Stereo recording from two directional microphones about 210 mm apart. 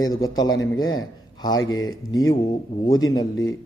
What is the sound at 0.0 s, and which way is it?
A man's voice, 20° left (ahead or behind).